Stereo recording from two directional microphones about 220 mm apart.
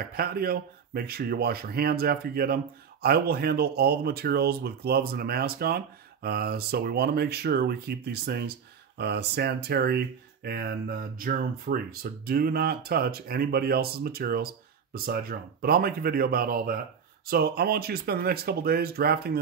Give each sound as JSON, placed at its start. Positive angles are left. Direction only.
{"t": 0.1, "sound": "speech", "side_deg": -45}